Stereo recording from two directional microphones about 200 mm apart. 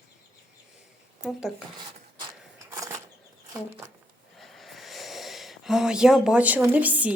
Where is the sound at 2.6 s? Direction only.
15° right (ahead or behind).